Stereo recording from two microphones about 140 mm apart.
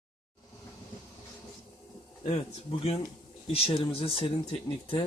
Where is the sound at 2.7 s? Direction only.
45° left (ahead or behind).